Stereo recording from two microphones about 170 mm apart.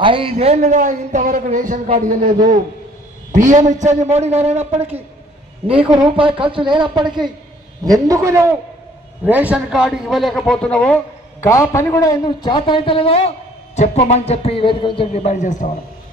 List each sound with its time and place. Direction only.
0.0 s a man's voice: 30° right (ahead or behind); by 2.3 s 55° right (ahead or behind)
3.3 s a man's voice: 50° right (ahead or behind)
6.0 s a man's voice: 30° right (ahead or behind); by 11.0 s 5° left (ahead or behind)
11.4 s a man's voice: 15° left (ahead or behind); by 13.3 s 35° left (ahead or behind)
13.7 s music: 40° left (ahead or behind)
15.2 s a man's voice: 45° left (ahead or behind)